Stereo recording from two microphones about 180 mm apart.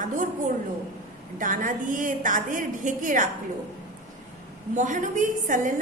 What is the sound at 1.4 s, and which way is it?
A woman's voice, 45° right (ahead or behind).